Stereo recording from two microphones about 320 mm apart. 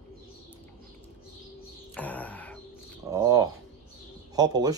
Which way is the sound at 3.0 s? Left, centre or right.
Centre.